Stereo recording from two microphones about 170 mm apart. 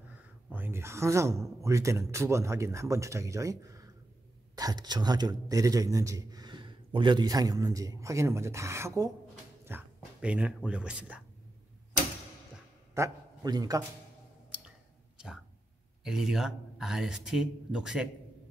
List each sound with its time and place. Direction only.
0.5 s a man's voice: 10° right (ahead or behind)
12.9 s a man's voice: 20° right (ahead or behind)
16.0 s speech: 5° right (ahead or behind)